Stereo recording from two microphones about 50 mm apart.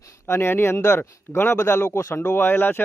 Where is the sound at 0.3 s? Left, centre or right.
Left.